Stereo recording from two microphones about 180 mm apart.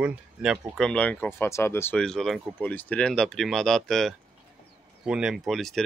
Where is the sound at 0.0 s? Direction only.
5° right (ahead or behind).